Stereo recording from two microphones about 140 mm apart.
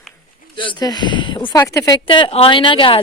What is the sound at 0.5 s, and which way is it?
Speech, 35° left (ahead or behind).